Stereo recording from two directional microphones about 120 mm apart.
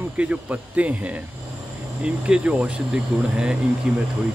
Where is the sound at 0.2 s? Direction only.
10° right (ahead or behind).